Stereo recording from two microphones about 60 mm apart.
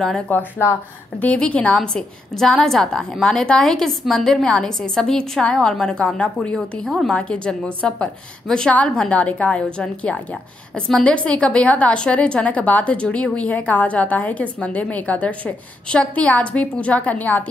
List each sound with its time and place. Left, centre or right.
0.3 s a woman's voice: left
1.8 s a woman's voice: centre
10.7 s a woman's voice: centre
11.0 s a woman's voice: centre